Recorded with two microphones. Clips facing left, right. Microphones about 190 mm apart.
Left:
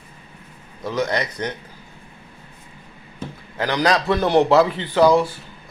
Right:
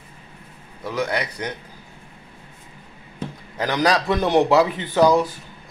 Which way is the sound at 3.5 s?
15° right (ahead or behind).